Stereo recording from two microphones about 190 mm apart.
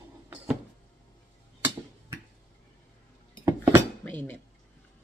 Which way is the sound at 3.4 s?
15° right (ahead or behind).